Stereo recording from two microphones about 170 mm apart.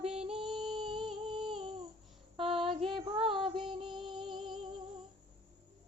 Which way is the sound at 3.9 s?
30° right (ahead or behind).